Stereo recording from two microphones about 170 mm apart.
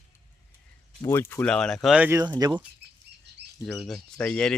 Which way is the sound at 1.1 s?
15° left (ahead or behind).